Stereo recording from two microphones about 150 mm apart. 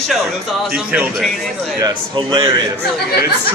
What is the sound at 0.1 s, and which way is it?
Speech, centre (ahead or behind).